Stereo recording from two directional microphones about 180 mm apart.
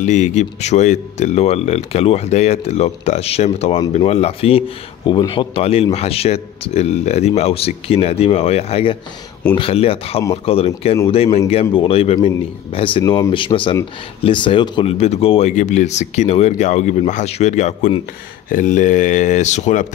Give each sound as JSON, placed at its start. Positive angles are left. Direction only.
{"t": 0.0, "sound": "speech", "side_deg": 40}